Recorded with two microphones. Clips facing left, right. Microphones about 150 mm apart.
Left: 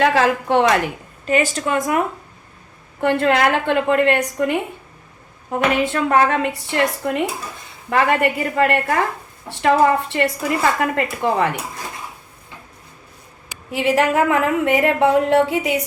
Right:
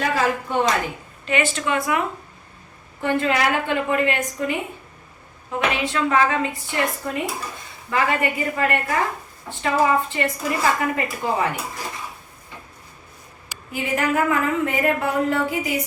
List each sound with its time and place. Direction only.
0.0 s a woman's voice: 80° left
1.3 s a woman's voice: 40° left (ahead or behind)
3.0 s a woman's voice: 65° left (ahead or behind)
5.5 s a woman's voice: 50° left (ahead or behind); by 11.4 s 65° left (ahead or behind)
13.7 s a woman's voice: 80° left